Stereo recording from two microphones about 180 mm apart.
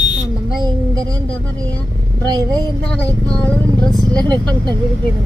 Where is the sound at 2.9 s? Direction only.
5° left (ahead or behind).